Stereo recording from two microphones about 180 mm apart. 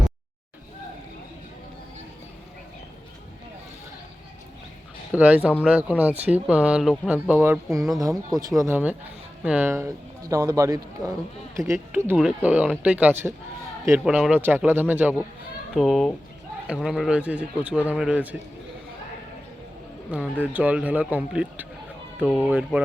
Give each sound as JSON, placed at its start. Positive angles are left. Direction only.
{"t": 5.1, "sound": "a man's voice", "side_deg": -10}
{"t": 20.1, "sound": "a man's voice", "side_deg": -10}